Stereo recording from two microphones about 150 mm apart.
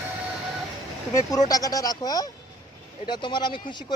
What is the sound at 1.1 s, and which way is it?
Speech, 25° left (ahead or behind).